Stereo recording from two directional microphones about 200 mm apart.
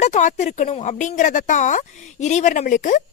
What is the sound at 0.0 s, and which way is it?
Speech, 35° left (ahead or behind).